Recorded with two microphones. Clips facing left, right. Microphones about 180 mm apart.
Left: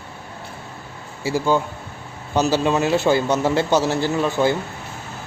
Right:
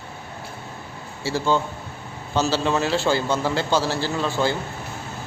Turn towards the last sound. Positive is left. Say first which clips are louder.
# left 4 dB
turn(degrees=20)  # may be behind; listen again after turning